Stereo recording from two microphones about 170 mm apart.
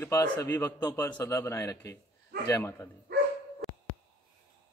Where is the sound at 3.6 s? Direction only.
Centre (ahead or behind).